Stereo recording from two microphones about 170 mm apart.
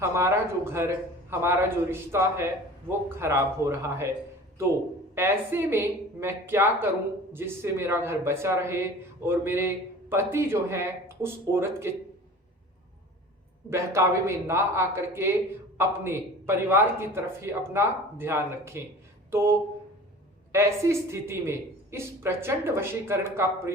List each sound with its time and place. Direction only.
0.0 s speech: 15° right (ahead or behind)
5.1 s speech: 15° right (ahead or behind)
13.7 s speech: 15° right (ahead or behind)
19.3 s a sound: 15° right (ahead or behind)
20.5 s speech: 15° right (ahead or behind)